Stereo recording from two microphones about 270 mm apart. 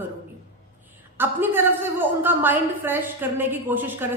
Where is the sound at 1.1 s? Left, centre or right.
Centre.